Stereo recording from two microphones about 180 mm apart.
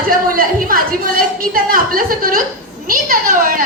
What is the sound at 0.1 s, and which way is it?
A woman's voice, 50° right (ahead or behind).